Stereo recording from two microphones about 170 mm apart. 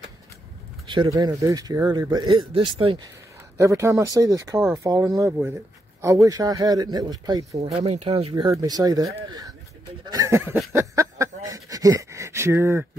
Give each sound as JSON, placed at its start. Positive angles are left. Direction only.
{"t": 0.8, "sound": "speech", "side_deg": -25}
{"t": 3.5, "sound": "speech", "side_deg": -15}
{"t": 7.5, "sound": "speech", "side_deg": -35}
{"t": 8.5, "sound": "speech", "side_deg": -20}
{"t": 10.7, "sound": "a sound", "side_deg": -15}